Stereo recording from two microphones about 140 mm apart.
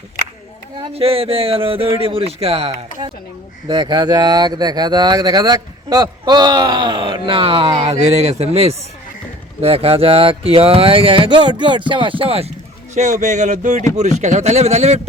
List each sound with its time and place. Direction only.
0.9 s speech: 45° right (ahead or behind)
7.9 s speech: 50° right (ahead or behind)
12.9 s speech: 55° right (ahead or behind)